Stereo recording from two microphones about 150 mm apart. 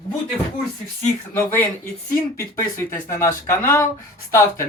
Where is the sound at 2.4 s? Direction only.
15° left (ahead or behind).